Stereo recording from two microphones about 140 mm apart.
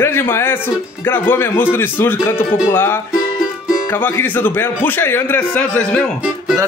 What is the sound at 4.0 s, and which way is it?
Speech, 15° left (ahead or behind).